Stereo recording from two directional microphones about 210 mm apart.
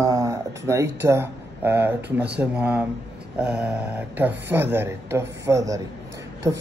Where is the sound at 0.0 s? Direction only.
15° right (ahead or behind).